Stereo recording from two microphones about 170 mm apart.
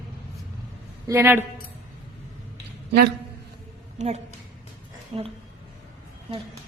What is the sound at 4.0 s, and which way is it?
Speech, 40° right (ahead or behind).